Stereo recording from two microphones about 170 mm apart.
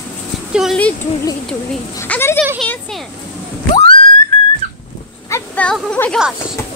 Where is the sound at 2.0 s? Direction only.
15° left (ahead or behind).